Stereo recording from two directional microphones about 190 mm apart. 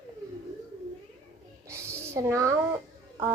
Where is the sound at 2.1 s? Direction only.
15° right (ahead or behind).